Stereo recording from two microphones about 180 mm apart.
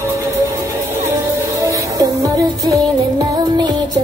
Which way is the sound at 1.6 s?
20° right (ahead or behind).